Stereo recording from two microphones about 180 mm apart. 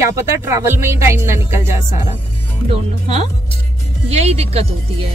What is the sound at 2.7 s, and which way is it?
Speech, 40° right (ahead or behind).